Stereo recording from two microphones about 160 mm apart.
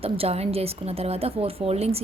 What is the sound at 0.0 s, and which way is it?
A woman's voice, 40° right (ahead or behind).